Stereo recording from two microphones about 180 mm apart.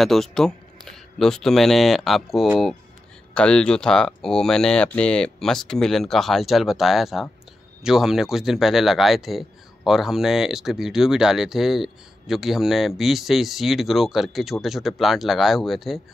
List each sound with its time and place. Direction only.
0.0 s speech: centre (ahead or behind)